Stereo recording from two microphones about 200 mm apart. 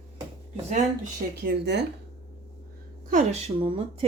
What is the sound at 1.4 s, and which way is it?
Speech, 55° right (ahead or behind).